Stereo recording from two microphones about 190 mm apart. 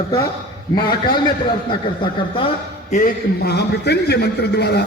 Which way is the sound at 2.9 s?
45° left (ahead or behind).